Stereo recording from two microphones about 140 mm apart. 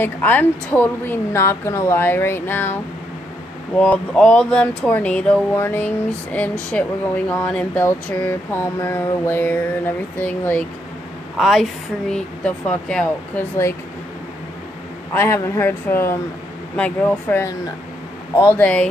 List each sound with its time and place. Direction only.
0.0 s a woman's voice: 10° left (ahead or behind)
11.3 s a woman's voice: centre (ahead or behind)
15.1 s a woman's voice: 20° left (ahead or behind)